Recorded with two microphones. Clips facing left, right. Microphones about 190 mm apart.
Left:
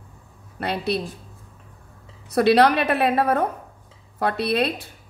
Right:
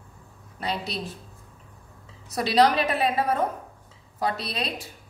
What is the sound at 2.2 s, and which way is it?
A woman's voice, 60° left (ahead or behind).